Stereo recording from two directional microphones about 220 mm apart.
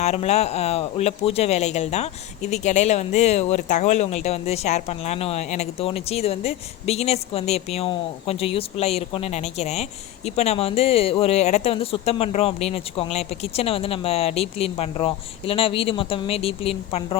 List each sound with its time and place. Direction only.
0.0 s speech: 30° left (ahead or behind)